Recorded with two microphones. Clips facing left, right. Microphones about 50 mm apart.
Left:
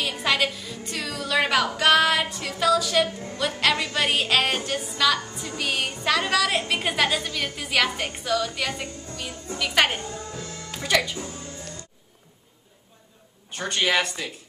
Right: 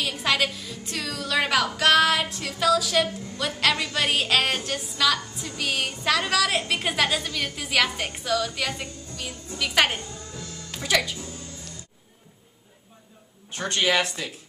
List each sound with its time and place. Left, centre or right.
0.0 s a woman's voice: centre
10.0 s music: left
10.7 s speech: centre
13.5 s a woman's voice: centre